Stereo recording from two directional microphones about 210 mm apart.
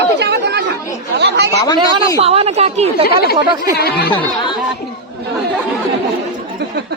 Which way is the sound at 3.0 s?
50° left (ahead or behind).